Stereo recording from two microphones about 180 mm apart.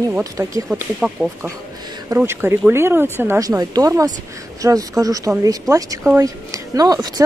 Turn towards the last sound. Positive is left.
turn(degrees=-20)  # may be behind; listen again after turning